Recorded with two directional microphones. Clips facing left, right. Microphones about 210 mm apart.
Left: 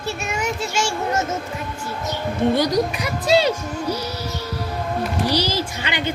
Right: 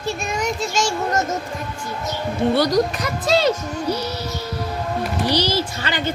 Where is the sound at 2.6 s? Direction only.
10° left (ahead or behind).